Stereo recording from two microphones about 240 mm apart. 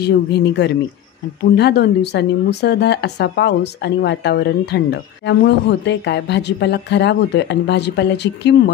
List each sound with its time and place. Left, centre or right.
0.0 s a woman's voice: left